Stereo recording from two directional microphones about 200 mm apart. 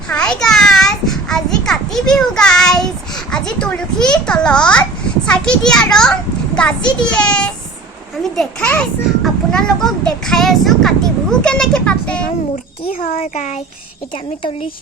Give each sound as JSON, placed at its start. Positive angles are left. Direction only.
{"t": 0.1, "sound": "a child's voice", "side_deg": 5}
{"t": 12.9, "sound": "a child's voice", "side_deg": 45}